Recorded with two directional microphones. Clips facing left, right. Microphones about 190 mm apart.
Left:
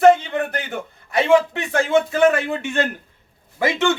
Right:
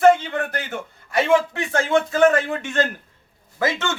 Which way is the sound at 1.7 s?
15° left (ahead or behind).